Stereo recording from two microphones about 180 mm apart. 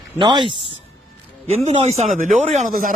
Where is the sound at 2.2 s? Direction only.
50° right (ahead or behind).